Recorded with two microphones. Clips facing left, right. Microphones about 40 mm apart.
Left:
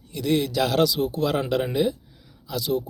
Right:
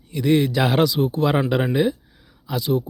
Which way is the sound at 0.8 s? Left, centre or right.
Centre.